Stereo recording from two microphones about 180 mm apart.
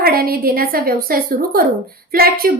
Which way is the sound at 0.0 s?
55° right (ahead or behind).